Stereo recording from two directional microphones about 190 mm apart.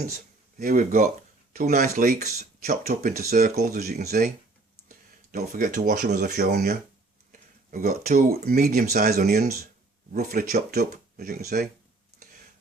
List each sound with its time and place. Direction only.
0.6 s speech: 50° right (ahead or behind)